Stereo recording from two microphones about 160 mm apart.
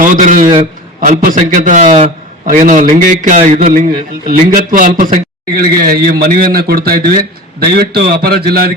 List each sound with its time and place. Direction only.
0.0 s a man's voice: 55° right (ahead or behind)
4.3 s speech: 60° right (ahead or behind)
5.9 s a man's voice: 75° right (ahead or behind)
7.6 s a man's voice: 80° right